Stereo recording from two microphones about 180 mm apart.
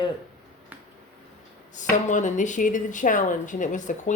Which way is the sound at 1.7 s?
45° left (ahead or behind).